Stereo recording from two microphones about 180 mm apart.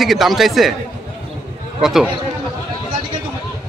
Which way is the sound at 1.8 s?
Centre (ahead or behind).